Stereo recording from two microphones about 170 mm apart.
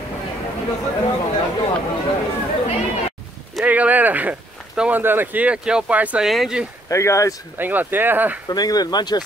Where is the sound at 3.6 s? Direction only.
10° right (ahead or behind).